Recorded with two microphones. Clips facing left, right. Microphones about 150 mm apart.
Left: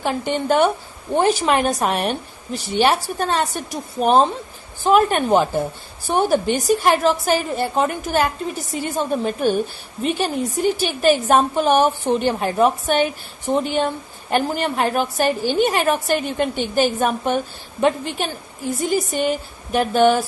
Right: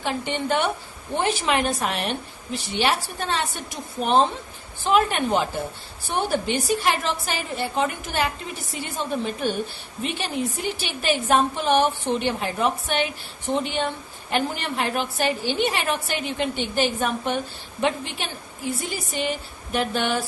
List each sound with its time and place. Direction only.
0.0 s a woman's voice: 45° left (ahead or behind)